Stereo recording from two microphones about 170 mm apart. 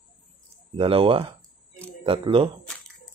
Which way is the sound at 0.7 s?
30° right (ahead or behind).